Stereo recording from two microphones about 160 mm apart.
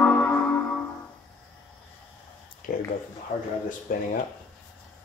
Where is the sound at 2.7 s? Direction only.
60° left (ahead or behind).